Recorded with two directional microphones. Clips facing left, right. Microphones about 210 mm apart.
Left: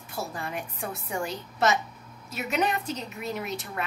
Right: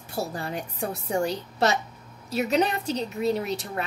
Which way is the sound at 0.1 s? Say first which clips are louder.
Right 4 dB; 35° right (ahead or behind).